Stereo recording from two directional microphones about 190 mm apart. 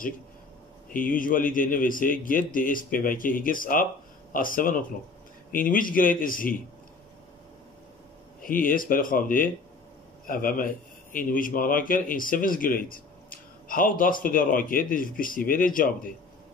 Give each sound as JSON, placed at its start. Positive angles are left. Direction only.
{"t": 0.9, "sound": "a man's voice", "side_deg": 45}
{"t": 8.4, "sound": "a man's voice", "side_deg": 45}